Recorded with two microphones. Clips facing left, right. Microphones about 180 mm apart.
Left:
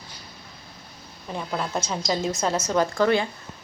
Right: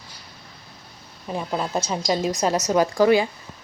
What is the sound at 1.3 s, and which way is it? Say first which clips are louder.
Speech: right 3 dB; 10° right (ahead or behind).